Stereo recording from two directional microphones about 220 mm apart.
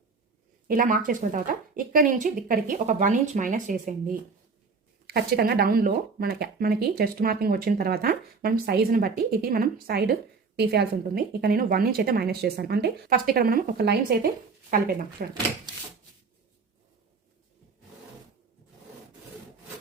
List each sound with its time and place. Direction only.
0.7 s speech: 40° right (ahead or behind)